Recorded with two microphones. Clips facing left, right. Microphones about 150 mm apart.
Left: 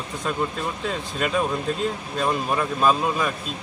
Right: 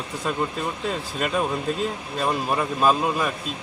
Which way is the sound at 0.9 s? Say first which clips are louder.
Left 2 dB; centre (ahead or behind).